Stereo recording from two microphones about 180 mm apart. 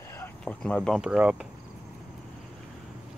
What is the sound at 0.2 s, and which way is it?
Speech, 10° left (ahead or behind).